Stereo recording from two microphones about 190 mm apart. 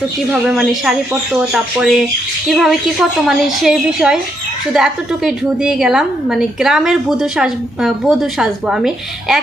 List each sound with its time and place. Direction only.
0.3 s a woman's voice: 5° right (ahead or behind)